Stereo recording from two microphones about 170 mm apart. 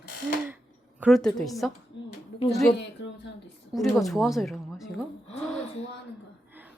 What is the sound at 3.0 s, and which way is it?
Speech, 90° left.